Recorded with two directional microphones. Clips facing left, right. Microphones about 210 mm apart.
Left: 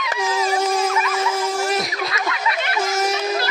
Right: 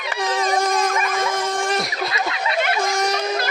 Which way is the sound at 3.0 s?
5° left (ahead or behind).